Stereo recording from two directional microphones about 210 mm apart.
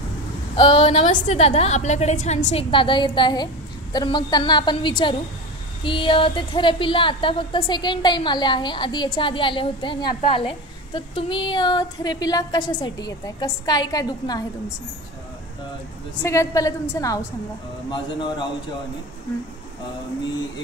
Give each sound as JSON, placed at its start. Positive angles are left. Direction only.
{"t": 0.6, "sound": "a woman's voice", "side_deg": 25}
{"t": 16.2, "sound": "a woman's voice", "side_deg": 15}